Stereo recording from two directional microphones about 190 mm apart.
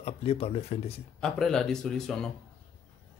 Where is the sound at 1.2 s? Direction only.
5° left (ahead or behind).